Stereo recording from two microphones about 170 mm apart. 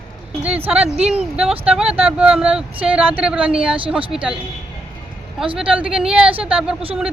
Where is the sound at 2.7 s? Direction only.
35° right (ahead or behind).